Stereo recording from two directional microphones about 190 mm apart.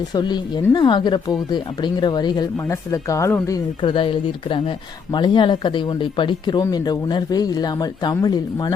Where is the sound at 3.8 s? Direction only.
25° left (ahead or behind).